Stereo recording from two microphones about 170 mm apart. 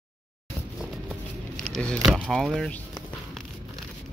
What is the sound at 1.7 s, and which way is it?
Speech, 5° left (ahead or behind).